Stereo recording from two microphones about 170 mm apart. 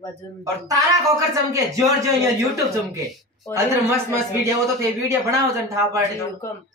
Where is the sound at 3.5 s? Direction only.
15° right (ahead or behind).